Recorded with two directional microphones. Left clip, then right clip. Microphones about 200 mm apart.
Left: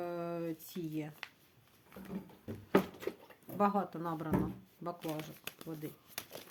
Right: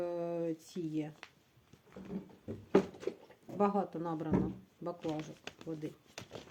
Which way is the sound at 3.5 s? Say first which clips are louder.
Even; 20° left (ahead or behind).